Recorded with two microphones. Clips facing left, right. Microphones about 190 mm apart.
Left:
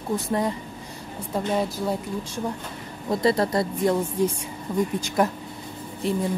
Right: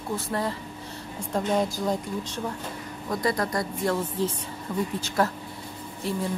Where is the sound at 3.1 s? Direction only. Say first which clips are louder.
Left 5 dB; 25° left (ahead or behind).